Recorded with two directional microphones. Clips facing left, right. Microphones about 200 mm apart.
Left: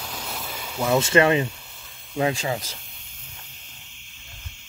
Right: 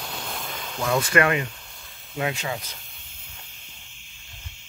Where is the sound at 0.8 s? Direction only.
25° left (ahead or behind).